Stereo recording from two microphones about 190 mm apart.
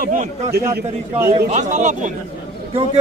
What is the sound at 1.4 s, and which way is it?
Speech, 40° right (ahead or behind).